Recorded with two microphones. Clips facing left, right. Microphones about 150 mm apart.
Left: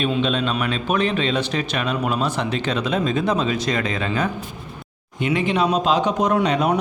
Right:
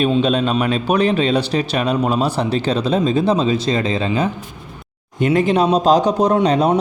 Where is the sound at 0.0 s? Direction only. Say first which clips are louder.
Right 5 dB; 40° right (ahead or behind).